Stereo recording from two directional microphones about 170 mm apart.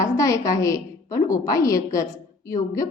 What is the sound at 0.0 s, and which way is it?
A woman's voice, 20° left (ahead or behind).